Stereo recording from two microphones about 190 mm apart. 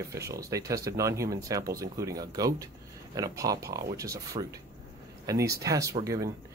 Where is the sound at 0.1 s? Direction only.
15° right (ahead or behind).